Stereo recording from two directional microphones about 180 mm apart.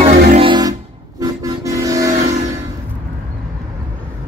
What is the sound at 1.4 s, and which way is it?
Vehicle, 20° right (ahead or behind).